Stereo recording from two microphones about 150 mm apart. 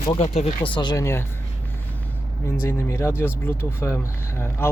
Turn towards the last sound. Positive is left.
turn(degrees=15)  # may be behind; listen again after turning